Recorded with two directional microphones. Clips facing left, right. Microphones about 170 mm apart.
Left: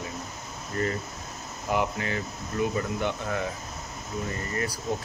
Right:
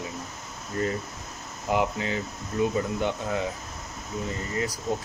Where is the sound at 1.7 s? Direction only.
20° right (ahead or behind).